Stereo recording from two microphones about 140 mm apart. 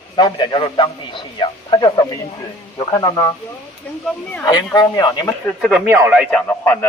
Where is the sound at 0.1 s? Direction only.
30° left (ahead or behind).